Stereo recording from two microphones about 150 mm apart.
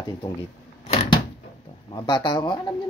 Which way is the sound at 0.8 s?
45° left (ahead or behind).